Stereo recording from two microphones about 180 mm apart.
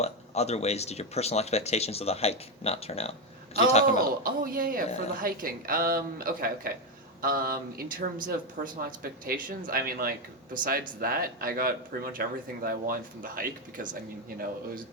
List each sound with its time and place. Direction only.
0.0 s speech: 35° left (ahead or behind)
4.2 s speech: 50° right (ahead or behind)